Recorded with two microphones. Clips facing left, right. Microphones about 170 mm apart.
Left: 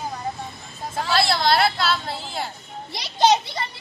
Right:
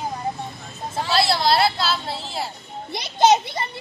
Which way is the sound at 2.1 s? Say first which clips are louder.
Right 1 dB; 30° right (ahead or behind).